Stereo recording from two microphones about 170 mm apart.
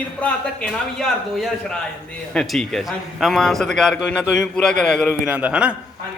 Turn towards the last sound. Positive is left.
turn(degrees=-5)  # may be behind; listen again after turning